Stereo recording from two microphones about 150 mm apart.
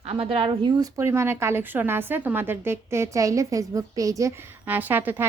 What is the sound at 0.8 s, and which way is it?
A woman's voice, 20° right (ahead or behind).